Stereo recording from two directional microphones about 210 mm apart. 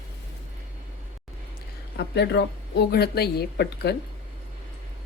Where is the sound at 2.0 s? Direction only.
55° left (ahead or behind).